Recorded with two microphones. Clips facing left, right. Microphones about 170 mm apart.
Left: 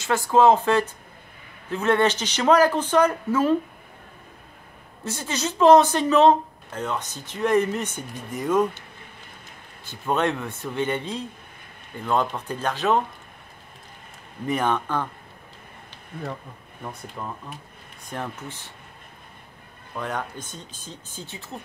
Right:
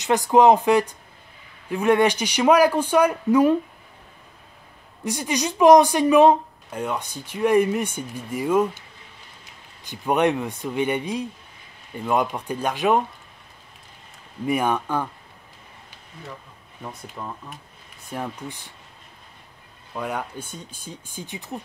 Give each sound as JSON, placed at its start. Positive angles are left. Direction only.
{"t": 0.0, "sound": "speech", "side_deg": -15}
{"t": 5.0, "sound": "speech", "side_deg": -15}
{"t": 9.8, "sound": "speech", "side_deg": -15}
{"t": 14.4, "sound": "speech", "side_deg": -10}
{"t": 16.1, "sound": "speech", "side_deg": 55}
{"t": 16.8, "sound": "speech", "side_deg": 0}
{"t": 18.1, "sound": "speech", "side_deg": -10}
{"t": 20.0, "sound": "speech", "side_deg": -10}